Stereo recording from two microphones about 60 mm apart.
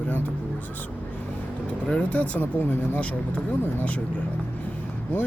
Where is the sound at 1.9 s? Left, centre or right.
Left.